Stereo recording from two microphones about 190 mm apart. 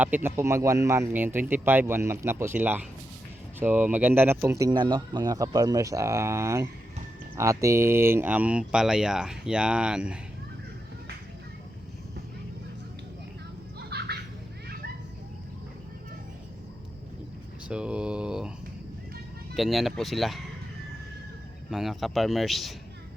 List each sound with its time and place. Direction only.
0.0 s speech: 10° right (ahead or behind)
13.7 s children playing: 60° right (ahead or behind)
17.7 s speech: 5° right (ahead or behind)
19.5 s speech: centre (ahead or behind)
21.7 s speech: centre (ahead or behind)